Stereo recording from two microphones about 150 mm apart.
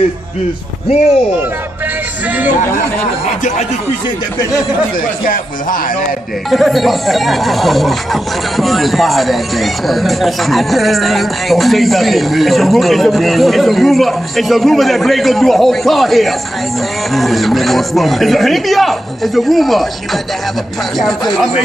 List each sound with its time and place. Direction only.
2.2 s speech: 10° right (ahead or behind)
5.2 s speech: 65° left (ahead or behind)
6.5 s speech: centre (ahead or behind)
21.3 s speech: 5° right (ahead or behind)